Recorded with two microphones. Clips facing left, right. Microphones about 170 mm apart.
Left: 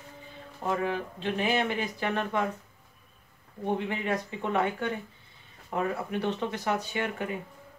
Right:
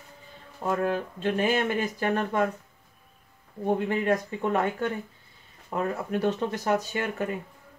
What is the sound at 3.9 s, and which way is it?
Speech, 45° right (ahead or behind).